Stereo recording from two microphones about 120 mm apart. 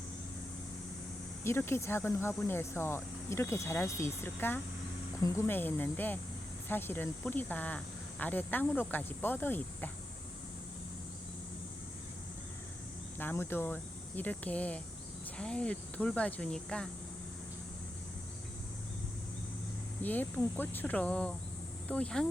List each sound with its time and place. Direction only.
1.5 s speech: 20° left (ahead or behind)
13.1 s speech: 15° left (ahead or behind)
20.0 s speech: 15° left (ahead or behind)